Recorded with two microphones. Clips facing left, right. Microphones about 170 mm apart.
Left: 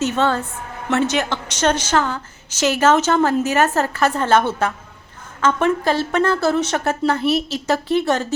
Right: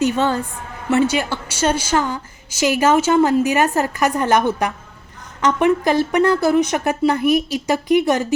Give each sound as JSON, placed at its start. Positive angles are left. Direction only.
{"t": 0.0, "sound": "a woman's voice", "side_deg": -15}